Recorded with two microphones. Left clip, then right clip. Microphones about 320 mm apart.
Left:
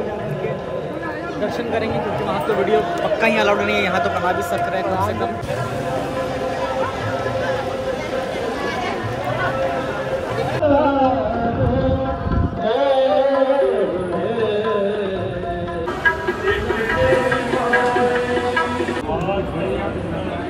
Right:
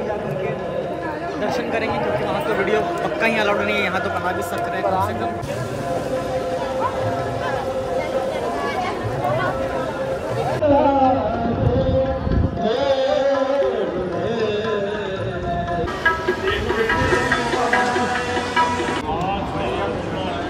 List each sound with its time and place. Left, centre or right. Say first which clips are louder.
2.7 s a man's voice: left 2 dB; centre
10.7 s chatter: right 1 dB; right
12.8 s a sound: left 4 dB; centre